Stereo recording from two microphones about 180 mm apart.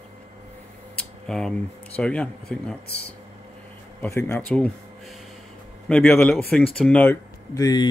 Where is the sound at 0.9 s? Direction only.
5° left (ahead or behind).